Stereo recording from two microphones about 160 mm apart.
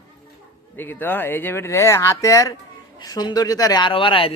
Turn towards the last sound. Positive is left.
turn(degrees=35)  # may be behind; listen again after turning